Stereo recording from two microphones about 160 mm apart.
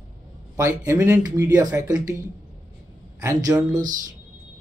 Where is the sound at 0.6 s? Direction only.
15° right (ahead or behind).